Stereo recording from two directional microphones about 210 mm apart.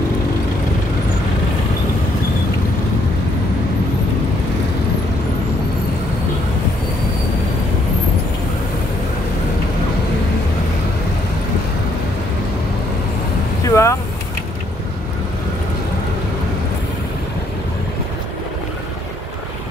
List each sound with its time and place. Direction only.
13.7 s vehicle: 15° left (ahead or behind)